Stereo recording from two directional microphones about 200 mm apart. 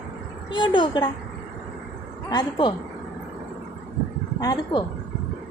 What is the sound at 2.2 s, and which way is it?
Speech, 20° left (ahead or behind).